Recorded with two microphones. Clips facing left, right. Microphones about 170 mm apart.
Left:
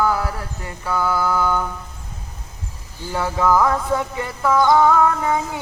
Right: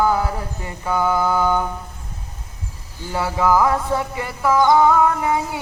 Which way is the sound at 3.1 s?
5° right (ahead or behind).